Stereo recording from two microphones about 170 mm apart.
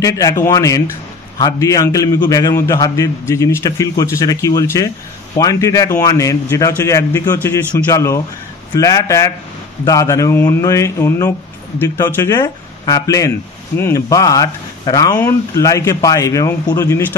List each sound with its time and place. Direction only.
0.0 s a man's voice: 20° left (ahead or behind)